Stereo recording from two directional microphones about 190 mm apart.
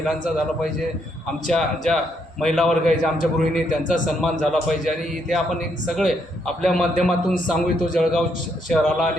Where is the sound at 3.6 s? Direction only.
45° left (ahead or behind).